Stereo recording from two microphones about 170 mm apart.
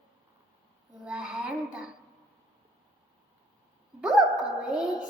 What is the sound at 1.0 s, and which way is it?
Speech, 5° right (ahead or behind).